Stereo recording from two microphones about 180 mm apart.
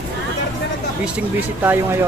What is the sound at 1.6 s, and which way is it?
Speech, 10° right (ahead or behind).